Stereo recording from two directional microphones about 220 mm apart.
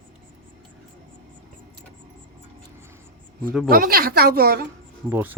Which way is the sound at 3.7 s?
40° right (ahead or behind).